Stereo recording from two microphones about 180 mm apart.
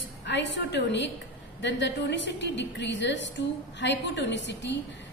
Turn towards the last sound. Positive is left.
turn(degrees=75)  # may be behind; listen again after turning